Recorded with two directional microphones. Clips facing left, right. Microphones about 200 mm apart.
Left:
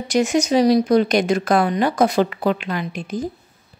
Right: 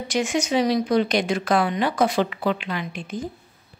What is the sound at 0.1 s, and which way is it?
A woman's voice, 40° left (ahead or behind).